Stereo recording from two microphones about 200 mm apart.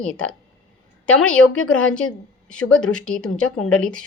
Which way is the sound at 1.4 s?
90° left.